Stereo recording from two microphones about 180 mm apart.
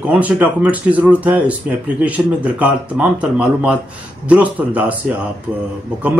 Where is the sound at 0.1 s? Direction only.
5° right (ahead or behind).